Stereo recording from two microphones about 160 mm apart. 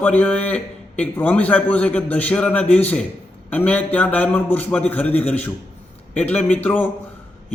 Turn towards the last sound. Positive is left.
turn(degrees=10)  # may be behind; listen again after turning